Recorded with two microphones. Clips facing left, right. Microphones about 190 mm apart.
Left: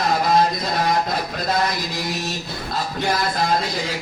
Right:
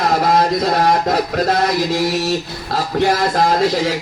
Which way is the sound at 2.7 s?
80° right.